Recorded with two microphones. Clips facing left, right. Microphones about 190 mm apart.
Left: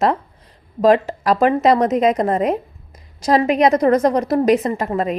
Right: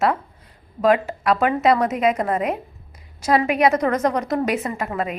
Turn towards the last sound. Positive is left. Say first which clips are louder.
# left 5 dB
turn(degrees=35)  # may be behind; listen again after turning